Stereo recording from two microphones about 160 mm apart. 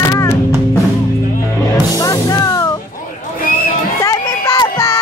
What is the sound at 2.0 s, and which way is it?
Music, 20° left (ahead or behind).